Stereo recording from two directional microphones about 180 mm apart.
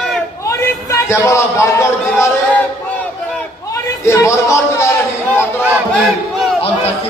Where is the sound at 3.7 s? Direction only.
15° left (ahead or behind).